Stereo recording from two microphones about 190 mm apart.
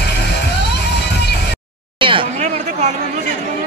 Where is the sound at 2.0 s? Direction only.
25° right (ahead or behind).